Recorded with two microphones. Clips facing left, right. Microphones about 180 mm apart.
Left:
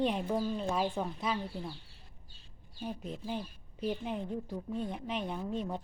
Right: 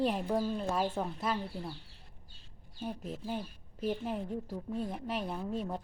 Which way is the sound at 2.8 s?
5° right (ahead or behind).